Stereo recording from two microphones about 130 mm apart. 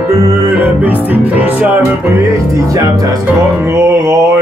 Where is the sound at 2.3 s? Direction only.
25° right (ahead or behind).